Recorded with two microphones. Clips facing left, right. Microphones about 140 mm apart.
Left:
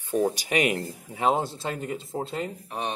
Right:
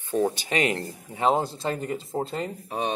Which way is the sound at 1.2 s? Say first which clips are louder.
Right 1 dB; 5° left (ahead or behind).